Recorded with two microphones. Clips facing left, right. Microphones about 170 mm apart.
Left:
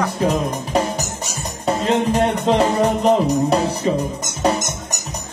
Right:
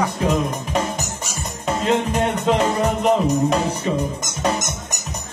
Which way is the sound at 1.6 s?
35° left (ahead or behind).